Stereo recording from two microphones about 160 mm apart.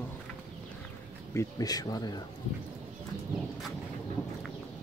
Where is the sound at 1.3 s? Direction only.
20° left (ahead or behind).